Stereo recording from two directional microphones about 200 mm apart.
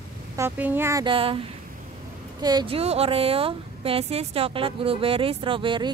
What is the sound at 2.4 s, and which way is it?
Speech, 25° right (ahead or behind).